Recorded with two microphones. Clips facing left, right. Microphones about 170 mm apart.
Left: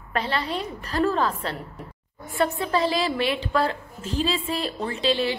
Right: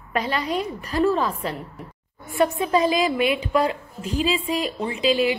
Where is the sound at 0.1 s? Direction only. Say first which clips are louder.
Right 2 dB; 10° right (ahead or behind).